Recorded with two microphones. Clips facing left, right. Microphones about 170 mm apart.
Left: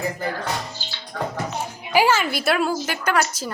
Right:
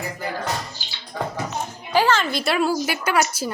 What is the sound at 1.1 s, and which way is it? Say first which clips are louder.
Music: even; 10° right (ahead or behind).